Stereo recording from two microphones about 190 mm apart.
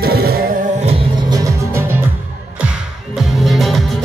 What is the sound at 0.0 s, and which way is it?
Music, 55° right (ahead or behind).